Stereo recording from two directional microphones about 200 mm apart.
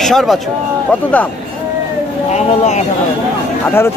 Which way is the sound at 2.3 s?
35° left (ahead or behind).